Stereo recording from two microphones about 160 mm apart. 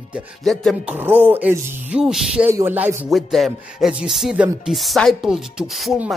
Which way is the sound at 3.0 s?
Centre (ahead or behind).